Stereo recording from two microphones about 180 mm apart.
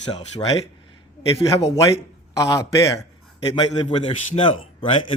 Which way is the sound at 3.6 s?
30° left (ahead or behind).